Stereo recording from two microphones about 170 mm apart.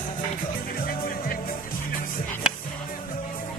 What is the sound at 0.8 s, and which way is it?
Music, 60° left (ahead or behind).